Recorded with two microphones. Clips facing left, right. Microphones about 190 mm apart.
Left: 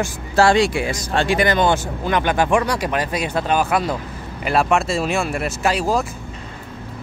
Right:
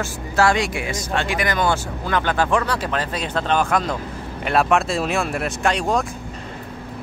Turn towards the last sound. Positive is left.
turn(degrees=5)  # may be behind; listen again after turning